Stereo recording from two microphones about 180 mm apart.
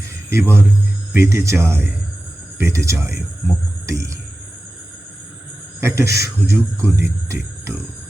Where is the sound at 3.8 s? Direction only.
15° right (ahead or behind).